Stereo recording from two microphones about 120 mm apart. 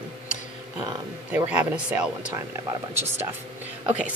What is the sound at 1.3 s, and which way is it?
Speech, 10° right (ahead or behind).